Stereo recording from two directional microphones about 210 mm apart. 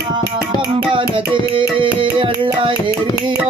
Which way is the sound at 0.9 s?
25° right (ahead or behind).